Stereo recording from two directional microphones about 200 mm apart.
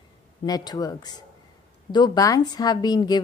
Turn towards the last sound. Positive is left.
turn(degrees=20)  # may be behind; listen again after turning